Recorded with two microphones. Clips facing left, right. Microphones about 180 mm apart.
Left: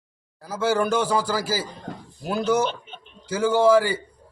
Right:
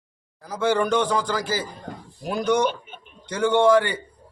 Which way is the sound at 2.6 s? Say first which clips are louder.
Right 4 dB; 10° right (ahead or behind).